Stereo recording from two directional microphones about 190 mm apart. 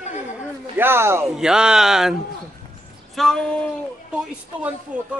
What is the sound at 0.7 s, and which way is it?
A man's voice, 10° right (ahead or behind).